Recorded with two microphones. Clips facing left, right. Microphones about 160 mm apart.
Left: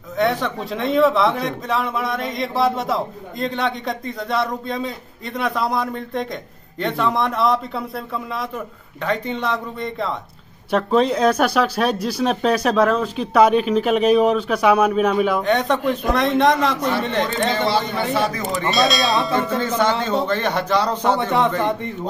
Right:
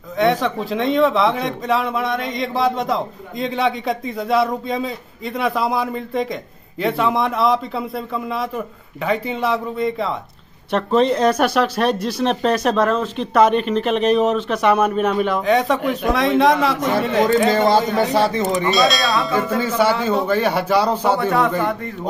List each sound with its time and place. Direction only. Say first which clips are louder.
0.2 s speech: right 3 dB; centre (ahead or behind)
17.5 s a man's voice: right 5 dB; 45° right (ahead or behind)
18.1 s speech: right 1 dB; 30° right (ahead or behind)
18.7 s a man's voice: left 2 dB; centre (ahead or behind)
21.2 s a man's voice: right 1 dB; 25° left (ahead or behind)